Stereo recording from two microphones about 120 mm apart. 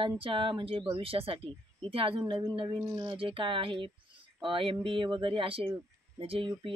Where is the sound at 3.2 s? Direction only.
45° right (ahead or behind).